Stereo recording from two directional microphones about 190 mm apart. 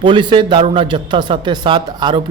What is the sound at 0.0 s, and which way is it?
Speech, 25° right (ahead or behind).